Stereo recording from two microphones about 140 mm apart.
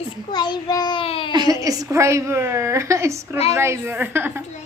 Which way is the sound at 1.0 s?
40° left (ahead or behind).